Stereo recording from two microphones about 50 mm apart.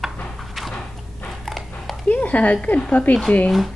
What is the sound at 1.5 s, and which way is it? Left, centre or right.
Dog, centre.